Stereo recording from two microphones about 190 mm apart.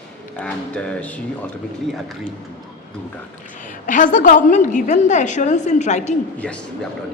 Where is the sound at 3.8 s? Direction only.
45° left (ahead or behind).